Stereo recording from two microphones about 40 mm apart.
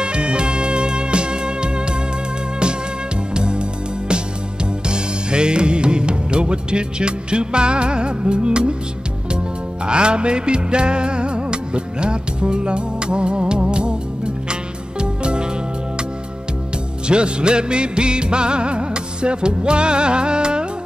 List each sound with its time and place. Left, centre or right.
0.0 s music: right
3.3 s music: right
4.8 s music: right
9.8 s music: right
17.1 s music: right